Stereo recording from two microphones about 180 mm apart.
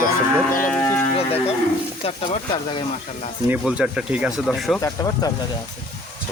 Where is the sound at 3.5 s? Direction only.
5° right (ahead or behind).